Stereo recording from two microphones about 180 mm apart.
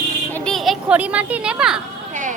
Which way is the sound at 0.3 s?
Centre (ahead or behind).